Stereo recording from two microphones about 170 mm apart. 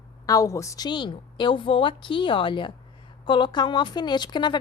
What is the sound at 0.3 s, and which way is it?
A woman's voice, 20° left (ahead or behind).